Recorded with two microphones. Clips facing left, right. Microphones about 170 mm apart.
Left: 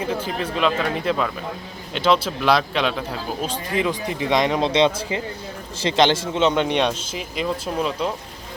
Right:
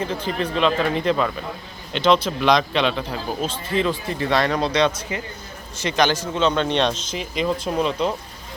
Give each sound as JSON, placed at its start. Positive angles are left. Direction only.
{"t": 0.0, "sound": "speech", "side_deg": 10}